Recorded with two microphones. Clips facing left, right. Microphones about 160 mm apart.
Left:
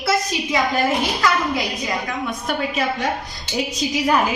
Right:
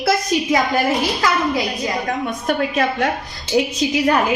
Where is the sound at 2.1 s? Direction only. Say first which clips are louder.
Right 4 dB; 45° right (ahead or behind).